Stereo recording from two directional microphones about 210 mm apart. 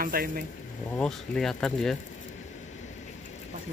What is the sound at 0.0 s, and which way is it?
Speech, 45° right (ahead or behind).